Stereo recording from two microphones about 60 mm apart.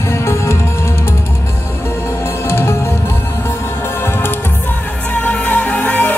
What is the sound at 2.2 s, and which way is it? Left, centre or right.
Music, left.